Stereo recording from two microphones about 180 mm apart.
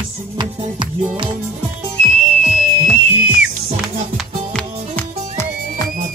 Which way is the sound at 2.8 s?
10° right (ahead or behind).